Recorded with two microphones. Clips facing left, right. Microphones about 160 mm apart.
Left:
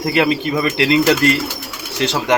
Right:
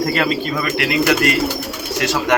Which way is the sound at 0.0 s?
20° left (ahead or behind).